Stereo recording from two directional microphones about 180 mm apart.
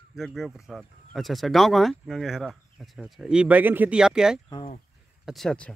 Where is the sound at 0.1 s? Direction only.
Centre (ahead or behind).